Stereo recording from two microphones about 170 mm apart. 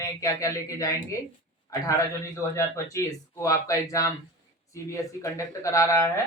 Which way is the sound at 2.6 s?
15° left (ahead or behind).